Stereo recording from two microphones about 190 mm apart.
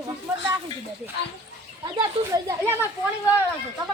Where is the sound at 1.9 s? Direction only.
20° right (ahead or behind).